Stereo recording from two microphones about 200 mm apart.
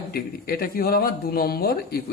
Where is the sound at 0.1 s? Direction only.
50° left (ahead or behind).